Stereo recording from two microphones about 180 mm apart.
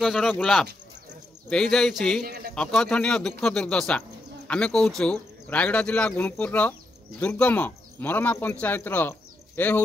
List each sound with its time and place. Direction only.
0.0 s speech: centre (ahead or behind)
2.2 s speech: 55° right (ahead or behind)
2.5 s a man's voice: 5° left (ahead or behind)